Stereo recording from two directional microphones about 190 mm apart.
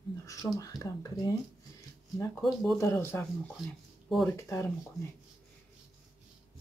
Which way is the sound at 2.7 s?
15° left (ahead or behind).